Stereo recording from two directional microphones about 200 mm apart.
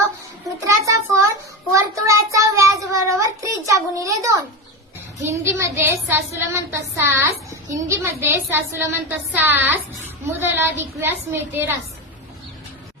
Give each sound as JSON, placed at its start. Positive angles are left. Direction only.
{"t": 0.9, "sound": "a sound", "side_deg": -15}
{"t": 1.7, "sound": "child singing", "side_deg": -15}
{"t": 5.2, "sound": "speech", "side_deg": -15}